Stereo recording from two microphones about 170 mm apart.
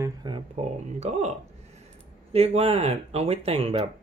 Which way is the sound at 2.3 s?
35° right (ahead or behind).